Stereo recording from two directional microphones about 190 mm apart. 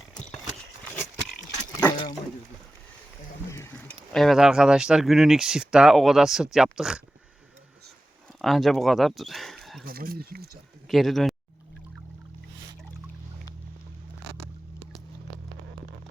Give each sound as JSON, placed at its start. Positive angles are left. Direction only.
{"t": 0.9, "sound": "a sound", "side_deg": 10}
{"t": 3.5, "sound": "speech", "side_deg": 10}
{"t": 8.4, "sound": "speech", "side_deg": 0}
{"t": 9.8, "sound": "speech", "side_deg": -50}
{"t": 10.8, "sound": "speech", "side_deg": 0}